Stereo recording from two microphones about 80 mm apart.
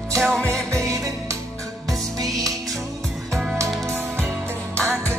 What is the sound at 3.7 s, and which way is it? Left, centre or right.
Music, centre.